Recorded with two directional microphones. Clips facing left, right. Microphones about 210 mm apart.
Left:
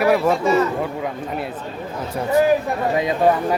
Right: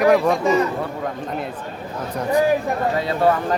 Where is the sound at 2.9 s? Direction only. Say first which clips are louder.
Left 3 dB; 15° left (ahead or behind).